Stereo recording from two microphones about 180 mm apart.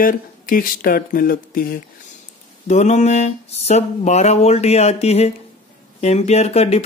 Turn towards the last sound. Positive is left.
turn(degrees=35)  # may be behind; listen again after turning